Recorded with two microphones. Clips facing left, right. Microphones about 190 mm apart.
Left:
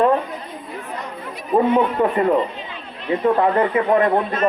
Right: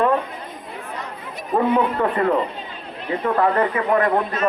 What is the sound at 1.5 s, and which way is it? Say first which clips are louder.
Speech: left 2 dB; 20° left (ahead or behind).